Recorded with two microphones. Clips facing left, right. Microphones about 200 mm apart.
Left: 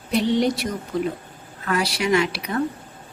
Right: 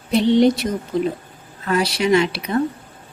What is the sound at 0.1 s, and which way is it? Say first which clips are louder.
A woman's voice: right 5 dB; 25° right (ahead or behind).